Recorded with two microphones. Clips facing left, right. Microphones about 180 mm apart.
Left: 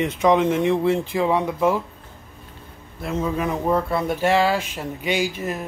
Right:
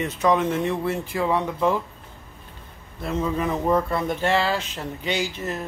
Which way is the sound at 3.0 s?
5° left (ahead or behind).